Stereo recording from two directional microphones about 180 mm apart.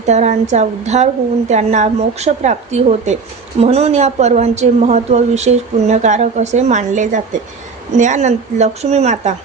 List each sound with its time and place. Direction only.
0.0 s a woman's voice: 40° right (ahead or behind)